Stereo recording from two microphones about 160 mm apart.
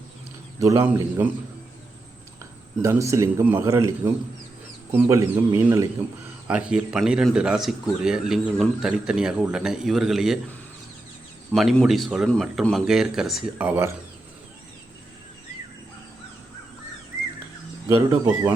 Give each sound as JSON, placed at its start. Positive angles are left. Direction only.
{"t": 0.6, "sound": "a man's voice", "side_deg": -20}
{"t": 2.8, "sound": "speech", "side_deg": -20}
{"t": 6.5, "sound": "a man's voice", "side_deg": -5}
{"t": 11.5, "sound": "a man's voice", "side_deg": 0}
{"t": 17.8, "sound": "speech", "side_deg": -20}